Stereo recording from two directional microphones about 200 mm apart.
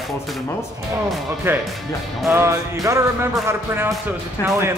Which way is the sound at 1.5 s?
10° right (ahead or behind).